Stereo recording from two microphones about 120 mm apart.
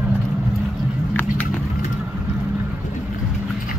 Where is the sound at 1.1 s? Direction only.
15° left (ahead or behind).